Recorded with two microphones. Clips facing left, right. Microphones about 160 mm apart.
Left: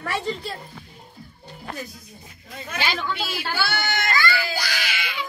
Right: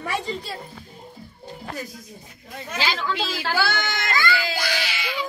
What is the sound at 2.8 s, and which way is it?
Speech, 90° right.